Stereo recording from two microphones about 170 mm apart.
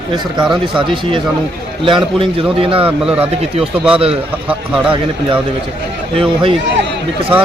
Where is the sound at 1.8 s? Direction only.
30° right (ahead or behind).